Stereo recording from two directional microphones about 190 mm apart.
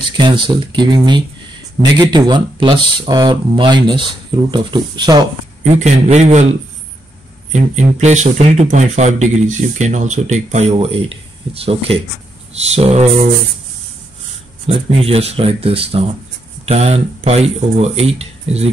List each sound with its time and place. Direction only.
0.0 s speech: 25° right (ahead or behind)
5.6 s speech: 35° right (ahead or behind)
7.5 s speech: 40° right (ahead or behind)
14.7 s speech: 30° right (ahead or behind)